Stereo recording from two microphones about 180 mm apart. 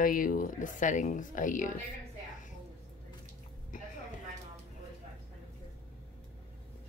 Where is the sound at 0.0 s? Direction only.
50° left (ahead or behind).